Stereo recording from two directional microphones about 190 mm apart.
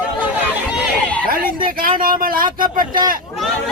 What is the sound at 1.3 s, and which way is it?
Speech, 50° right (ahead or behind).